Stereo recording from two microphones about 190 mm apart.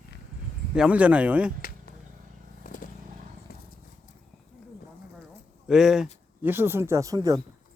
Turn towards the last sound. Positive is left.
turn(degrees=-15)  # may be behind; listen again after turning